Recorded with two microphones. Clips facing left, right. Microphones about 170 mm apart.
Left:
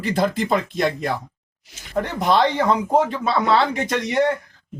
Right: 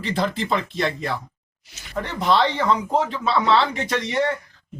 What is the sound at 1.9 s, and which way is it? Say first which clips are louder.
Speech: left 2 dB; 50° left (ahead or behind).